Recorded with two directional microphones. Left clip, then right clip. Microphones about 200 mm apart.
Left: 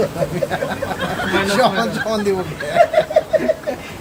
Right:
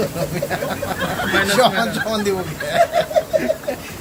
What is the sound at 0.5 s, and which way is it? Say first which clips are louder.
Speech: left 1 dB; centre (ahead or behind).